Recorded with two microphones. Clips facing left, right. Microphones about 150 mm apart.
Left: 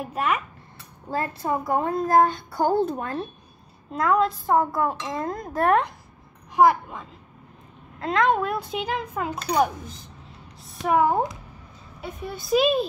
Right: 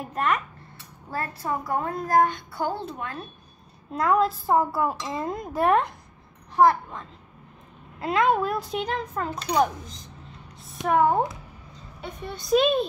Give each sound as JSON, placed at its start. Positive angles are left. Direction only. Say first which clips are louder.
{"t": 0.0, "sound": "speech", "louder": "even", "side_deg": 5}
{"t": 1.1, "sound": "a child's voice", "louder": "left 3 dB", "side_deg": 20}
{"t": 3.9, "sound": "speech", "louder": "even", "side_deg": 0}
{"t": 6.5, "sound": "a woman's voice", "louder": "left 1 dB", "side_deg": 10}
{"t": 8.0, "sound": "a woman's voice", "louder": "even", "side_deg": -5}